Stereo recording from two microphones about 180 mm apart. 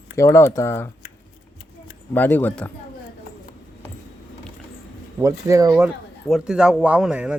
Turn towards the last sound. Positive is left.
turn(degrees=-5)  # may be behind; listen again after turning